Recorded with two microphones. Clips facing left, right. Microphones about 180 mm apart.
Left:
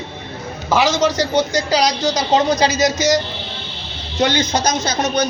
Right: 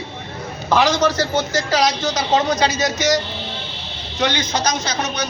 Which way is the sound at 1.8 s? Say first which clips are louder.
Left 2 dB; 40° left (ahead or behind).